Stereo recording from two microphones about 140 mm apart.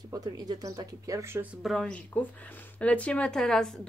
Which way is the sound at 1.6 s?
Centre (ahead or behind).